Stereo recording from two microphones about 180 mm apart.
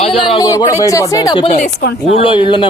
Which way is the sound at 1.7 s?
70° left (ahead or behind).